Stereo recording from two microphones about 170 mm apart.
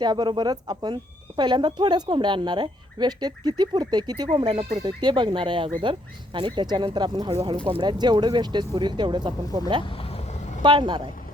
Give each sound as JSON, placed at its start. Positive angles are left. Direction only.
{"t": 0.0, "sound": "speech", "side_deg": -25}